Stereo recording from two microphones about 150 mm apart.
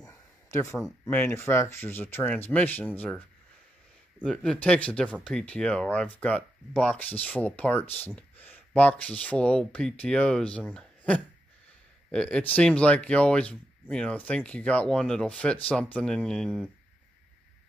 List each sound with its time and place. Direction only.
0.0 s speech: 20° left (ahead or behind)
4.2 s speech: 5° left (ahead or behind)